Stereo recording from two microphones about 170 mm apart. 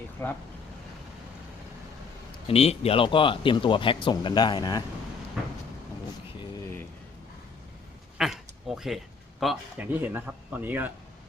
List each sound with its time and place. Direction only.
0.2 s speech: 10° left (ahead or behind)
2.5 s speech: 35° left (ahead or behind)
8.2 s a sound: centre (ahead or behind)
9.4 s a man's voice: 5° right (ahead or behind)